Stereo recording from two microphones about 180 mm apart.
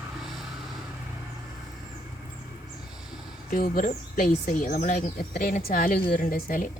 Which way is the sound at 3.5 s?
50° left (ahead or behind).